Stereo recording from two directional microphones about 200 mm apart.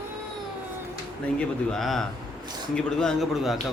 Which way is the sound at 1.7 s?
Centre (ahead or behind).